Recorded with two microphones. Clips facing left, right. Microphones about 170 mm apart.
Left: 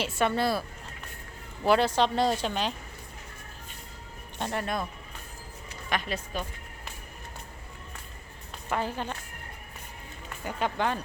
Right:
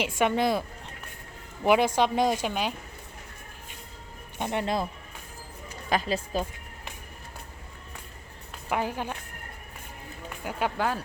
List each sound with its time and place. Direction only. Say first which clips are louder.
0.0 s a woman's voice: right 2 dB; 15° right (ahead or behind)
1.6 s a woman's voice: right 1 dB; 15° right (ahead or behind)
4.4 s speech: right 3 dB; 20° right (ahead or behind)
5.9 s a woman's voice: right 5 dB; 30° right (ahead or behind)
8.7 s a woman's voice: right 2 dB; 10° right (ahead or behind)
10.4 s speech: right 1 dB; 5° right (ahead or behind)